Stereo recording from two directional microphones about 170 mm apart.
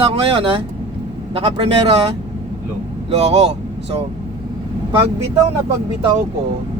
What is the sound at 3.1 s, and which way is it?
Speech, 40° right (ahead or behind).